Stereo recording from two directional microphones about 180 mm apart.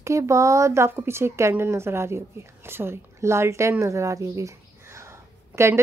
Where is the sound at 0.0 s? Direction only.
15° right (ahead or behind).